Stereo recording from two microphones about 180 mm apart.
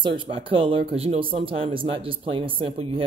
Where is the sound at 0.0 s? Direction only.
30° right (ahead or behind).